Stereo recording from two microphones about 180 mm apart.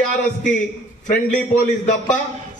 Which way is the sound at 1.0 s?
45° left (ahead or behind).